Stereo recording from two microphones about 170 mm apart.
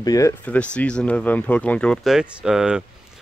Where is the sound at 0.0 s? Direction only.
20° left (ahead or behind).